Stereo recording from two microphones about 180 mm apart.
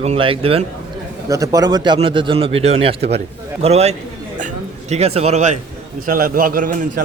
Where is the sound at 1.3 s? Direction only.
20° right (ahead or behind); by 3.9 s 35° right (ahead or behind).